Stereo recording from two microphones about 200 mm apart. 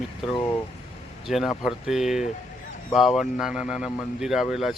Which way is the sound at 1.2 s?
Centre (ahead or behind).